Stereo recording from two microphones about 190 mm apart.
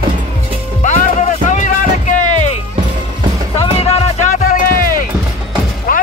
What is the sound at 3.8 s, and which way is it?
Music, 30° left (ahead or behind).